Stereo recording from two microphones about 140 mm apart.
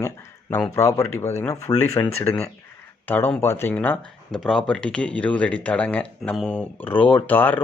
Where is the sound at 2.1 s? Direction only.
45° left (ahead or behind).